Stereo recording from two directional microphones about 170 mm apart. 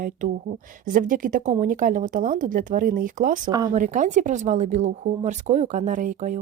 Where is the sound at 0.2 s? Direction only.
50° right (ahead or behind).